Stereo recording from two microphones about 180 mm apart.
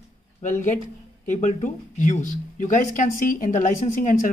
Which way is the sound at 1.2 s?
45° left (ahead or behind).